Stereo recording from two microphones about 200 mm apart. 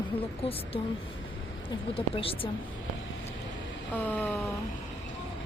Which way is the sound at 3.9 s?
10° left (ahead or behind).